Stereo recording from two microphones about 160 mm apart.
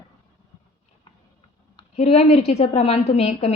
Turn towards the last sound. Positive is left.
turn(degrees=40)  # may be behind; listen again after turning